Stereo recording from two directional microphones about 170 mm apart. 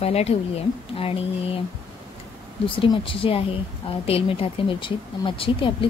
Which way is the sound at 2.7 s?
30° left (ahead or behind).